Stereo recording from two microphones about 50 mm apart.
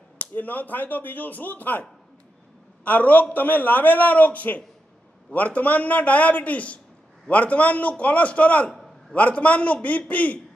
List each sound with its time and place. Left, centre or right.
0.4 s a man's voice: left